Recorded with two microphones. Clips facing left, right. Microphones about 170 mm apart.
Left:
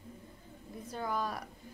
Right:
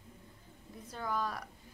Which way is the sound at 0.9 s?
15° left (ahead or behind).